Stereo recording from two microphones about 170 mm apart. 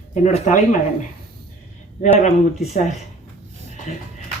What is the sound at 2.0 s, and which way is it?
Speech, 45° left (ahead or behind).